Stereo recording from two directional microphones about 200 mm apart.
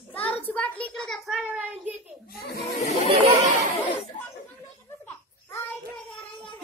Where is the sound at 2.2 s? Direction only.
50° left (ahead or behind).